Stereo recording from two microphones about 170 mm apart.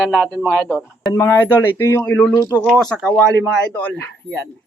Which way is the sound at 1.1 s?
15° left (ahead or behind).